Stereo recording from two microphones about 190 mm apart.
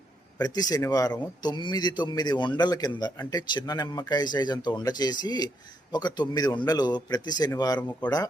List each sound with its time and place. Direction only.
0.3 s a man's voice: 20° left (ahead or behind)